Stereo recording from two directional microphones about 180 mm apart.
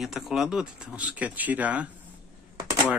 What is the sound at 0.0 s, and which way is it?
Speech, centre (ahead or behind).